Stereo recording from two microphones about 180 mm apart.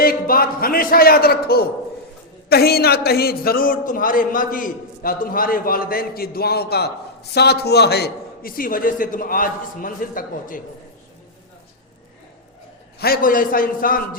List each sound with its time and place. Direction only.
0.0 s a man's voice: 55° left (ahead or behind)
13.0 s a man's voice: 55° left (ahead or behind)